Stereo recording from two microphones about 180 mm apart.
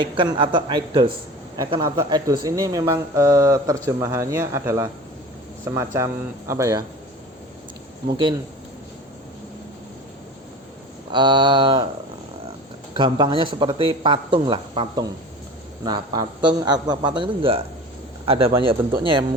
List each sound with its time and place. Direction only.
0.0 s speech: 25° right (ahead or behind)
8.0 s speech: 25° right (ahead or behind)
11.1 s speech: 25° right (ahead or behind)
13.0 s speech: 25° right (ahead or behind)